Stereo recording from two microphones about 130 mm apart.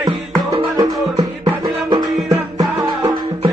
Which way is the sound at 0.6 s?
30° right (ahead or behind).